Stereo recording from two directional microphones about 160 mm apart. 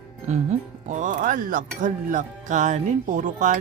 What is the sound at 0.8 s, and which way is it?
Speech, 50° right (ahead or behind).